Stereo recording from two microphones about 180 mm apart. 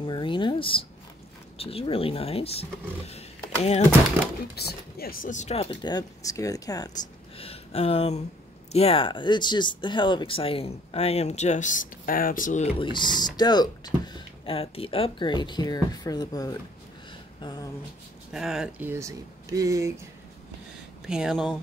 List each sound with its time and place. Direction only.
0.0 s speech: 30° left (ahead or behind)
4.6 s speech: 60° left (ahead or behind); by 16.5 s 20° left (ahead or behind)
17.4 s a sound: 25° left (ahead or behind)
18.3 s speech: centre (ahead or behind); by 19.9 s 15° right (ahead or behind)
21.1 s speech: 5° right (ahead or behind)